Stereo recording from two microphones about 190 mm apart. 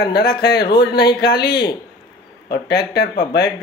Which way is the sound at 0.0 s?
55° left (ahead or behind).